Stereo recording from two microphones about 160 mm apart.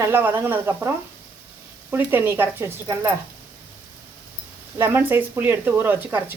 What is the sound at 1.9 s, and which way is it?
Speech, 15° right (ahead or behind).